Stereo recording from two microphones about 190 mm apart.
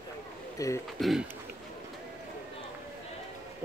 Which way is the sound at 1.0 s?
Centre (ahead or behind).